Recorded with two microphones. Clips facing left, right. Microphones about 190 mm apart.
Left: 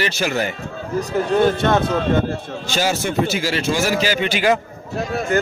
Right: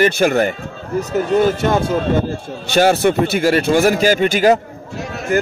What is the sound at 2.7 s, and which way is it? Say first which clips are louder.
A man's voice: right 7 dB; 60° right (ahead or behind).